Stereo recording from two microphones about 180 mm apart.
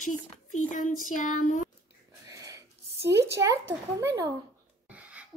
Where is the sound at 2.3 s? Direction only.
20° right (ahead or behind).